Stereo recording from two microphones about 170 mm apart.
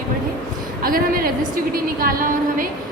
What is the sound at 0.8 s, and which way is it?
A woman's voice, 55° right (ahead or behind).